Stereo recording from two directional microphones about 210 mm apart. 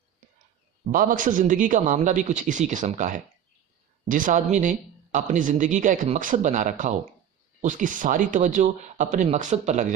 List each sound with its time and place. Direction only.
0.9 s speech: 40° right (ahead or behind)